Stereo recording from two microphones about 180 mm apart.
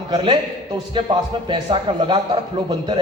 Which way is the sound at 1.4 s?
25° right (ahead or behind).